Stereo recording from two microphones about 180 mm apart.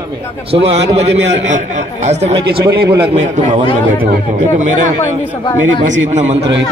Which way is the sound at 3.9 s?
45° right (ahead or behind).